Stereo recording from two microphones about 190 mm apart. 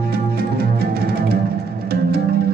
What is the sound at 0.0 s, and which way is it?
Music, 55° right (ahead or behind).